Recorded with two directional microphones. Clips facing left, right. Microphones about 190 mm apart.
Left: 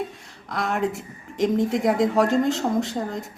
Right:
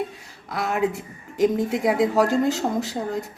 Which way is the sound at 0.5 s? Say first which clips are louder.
Right 1 dB; 5° right (ahead or behind).